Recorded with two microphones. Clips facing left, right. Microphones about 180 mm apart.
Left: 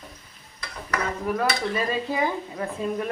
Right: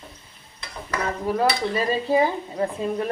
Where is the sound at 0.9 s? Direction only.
30° right (ahead or behind).